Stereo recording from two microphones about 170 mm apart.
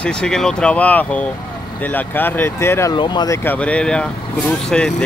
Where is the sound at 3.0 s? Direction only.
25° left (ahead or behind).